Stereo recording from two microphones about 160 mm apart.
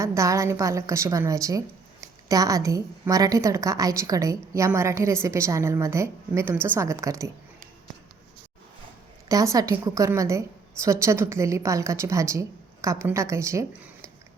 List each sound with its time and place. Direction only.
0.0 s a woman's voice: 20° right (ahead or behind)
9.3 s a woman's voice: 20° right (ahead or behind)